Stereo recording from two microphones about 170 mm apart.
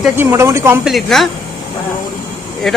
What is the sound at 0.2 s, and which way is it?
Speech, 15° right (ahead or behind).